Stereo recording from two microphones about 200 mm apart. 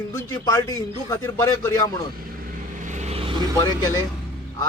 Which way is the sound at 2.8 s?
35° right (ahead or behind).